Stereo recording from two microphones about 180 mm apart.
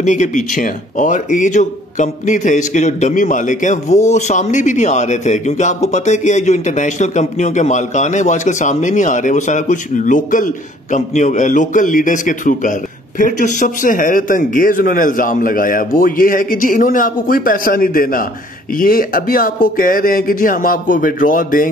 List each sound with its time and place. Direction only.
0.0 s speech: 45° left (ahead or behind)